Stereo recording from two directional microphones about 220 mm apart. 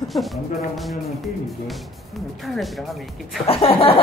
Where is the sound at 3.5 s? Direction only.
25° left (ahead or behind).